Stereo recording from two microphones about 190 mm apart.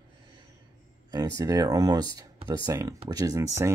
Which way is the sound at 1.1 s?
20° right (ahead or behind).